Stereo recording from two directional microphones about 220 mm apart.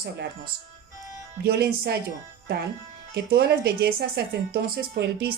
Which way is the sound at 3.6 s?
45° right (ahead or behind).